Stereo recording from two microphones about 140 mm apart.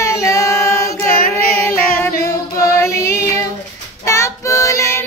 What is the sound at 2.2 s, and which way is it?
Female singing, 20° left (ahead or behind).